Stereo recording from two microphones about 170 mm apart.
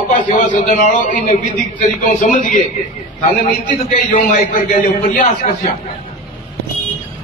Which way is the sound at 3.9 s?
60° left (ahead or behind).